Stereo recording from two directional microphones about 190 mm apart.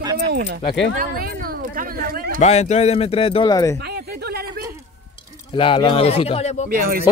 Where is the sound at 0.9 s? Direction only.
50° right (ahead or behind).